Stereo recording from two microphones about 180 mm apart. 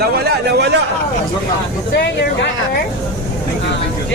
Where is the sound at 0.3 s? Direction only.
70° right (ahead or behind).